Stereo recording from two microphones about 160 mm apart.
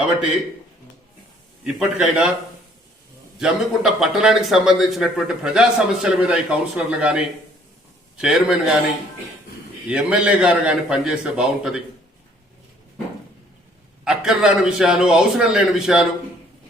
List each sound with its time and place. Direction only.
1.6 s speech: 5° right (ahead or behind)
3.3 s speech: centre (ahead or behind)
9.9 s speech: 5° right (ahead or behind)
14.0 s speech: 5° right (ahead or behind)